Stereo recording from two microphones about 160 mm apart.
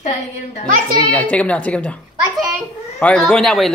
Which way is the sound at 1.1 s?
10° left (ahead or behind).